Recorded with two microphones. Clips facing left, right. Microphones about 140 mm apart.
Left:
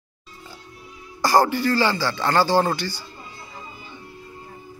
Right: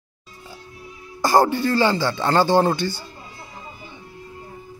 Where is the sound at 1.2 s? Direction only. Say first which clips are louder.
Right 1 dB; 20° right (ahead or behind).